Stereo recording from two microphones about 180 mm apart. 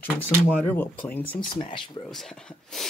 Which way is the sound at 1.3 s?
30° left (ahead or behind).